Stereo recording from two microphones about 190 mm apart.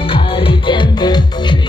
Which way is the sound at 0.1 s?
25° left (ahead or behind).